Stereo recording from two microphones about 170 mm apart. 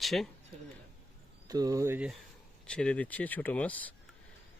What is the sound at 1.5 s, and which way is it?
Speech, 20° right (ahead or behind).